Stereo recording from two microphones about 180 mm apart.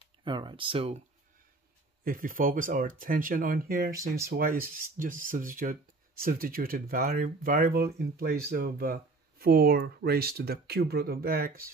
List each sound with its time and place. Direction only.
0.2 s speech: 25° right (ahead or behind)
2.0 s speech: 50° right (ahead or behind)